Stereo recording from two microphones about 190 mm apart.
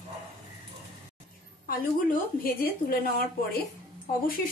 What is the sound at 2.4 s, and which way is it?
Speech, 50° left (ahead or behind).